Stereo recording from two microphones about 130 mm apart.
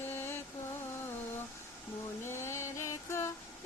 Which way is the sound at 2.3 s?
20° left (ahead or behind).